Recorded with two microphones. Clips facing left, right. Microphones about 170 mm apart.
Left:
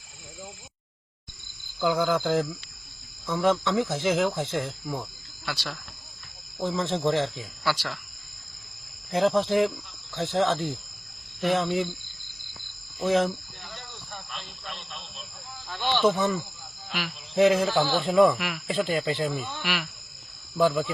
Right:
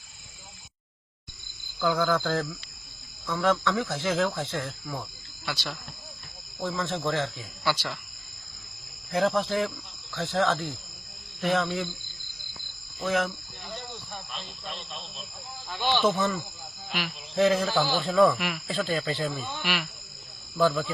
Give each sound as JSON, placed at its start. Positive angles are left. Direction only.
{"t": 1.8, "sound": "speech", "side_deg": 20}
{"t": 5.5, "sound": "speech", "side_deg": 0}
{"t": 6.6, "sound": "speech", "side_deg": 20}
{"t": 7.6, "sound": "speech", "side_deg": 5}
{"t": 9.0, "sound": "speech", "side_deg": 20}
{"t": 13.0, "sound": "speech", "side_deg": 25}
{"t": 13.7, "sound": "a sound", "side_deg": -20}
{"t": 15.7, "sound": "speech", "side_deg": -5}
{"t": 16.0, "sound": "speech", "side_deg": 10}
{"t": 18.3, "sound": "speech", "side_deg": 0}
{"t": 18.7, "sound": "speech", "side_deg": 15}
{"t": 19.6, "sound": "speech", "side_deg": 0}
{"t": 20.6, "sound": "speech", "side_deg": 15}